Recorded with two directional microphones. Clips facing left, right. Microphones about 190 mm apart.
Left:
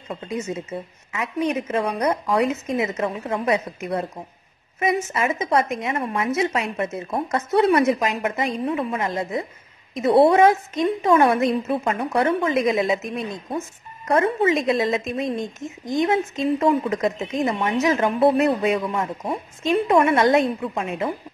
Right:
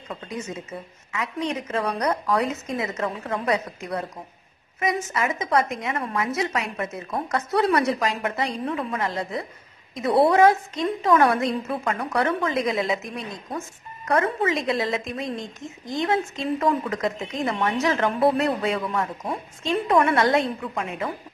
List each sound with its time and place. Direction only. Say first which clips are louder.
1.5 s a woman's voice: left 3 dB; 20° left (ahead or behind)